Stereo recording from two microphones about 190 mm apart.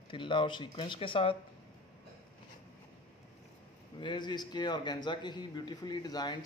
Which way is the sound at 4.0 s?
25° left (ahead or behind).